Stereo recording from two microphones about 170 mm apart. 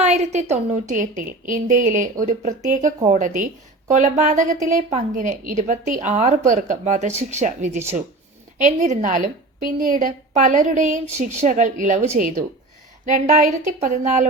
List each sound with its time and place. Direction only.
0.0 s a woman's voice: 40° right (ahead or behind)